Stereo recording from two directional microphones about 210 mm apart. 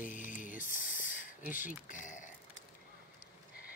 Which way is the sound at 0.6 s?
40° left (ahead or behind).